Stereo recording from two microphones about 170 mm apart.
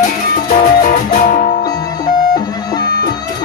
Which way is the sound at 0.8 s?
55° left (ahead or behind).